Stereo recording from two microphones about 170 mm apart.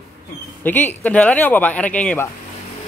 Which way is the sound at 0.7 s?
10° left (ahead or behind).